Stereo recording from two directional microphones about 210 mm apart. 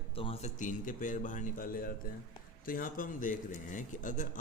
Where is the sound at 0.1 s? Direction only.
25° left (ahead or behind).